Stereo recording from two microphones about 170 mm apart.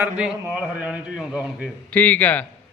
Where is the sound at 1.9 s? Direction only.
10° left (ahead or behind).